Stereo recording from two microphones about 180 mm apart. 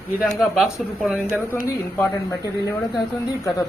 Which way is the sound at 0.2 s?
Centre (ahead or behind).